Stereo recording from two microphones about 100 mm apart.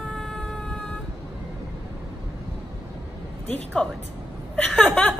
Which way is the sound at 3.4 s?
15° left (ahead or behind).